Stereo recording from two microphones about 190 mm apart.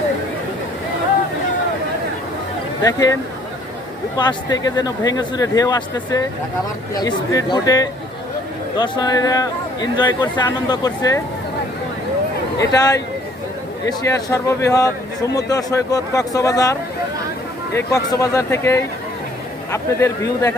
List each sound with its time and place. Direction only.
2.8 s speech: 20° left (ahead or behind)
4.2 s speech: 20° left (ahead or behind)
12.5 s speech: 20° left (ahead or behind)
17.7 s speech: 20° left (ahead or behind)